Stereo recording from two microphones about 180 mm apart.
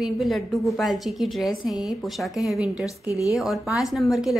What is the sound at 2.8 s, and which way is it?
Speech, 20° left (ahead or behind).